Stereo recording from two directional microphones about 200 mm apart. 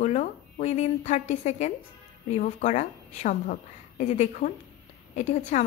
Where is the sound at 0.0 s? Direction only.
35° left (ahead or behind).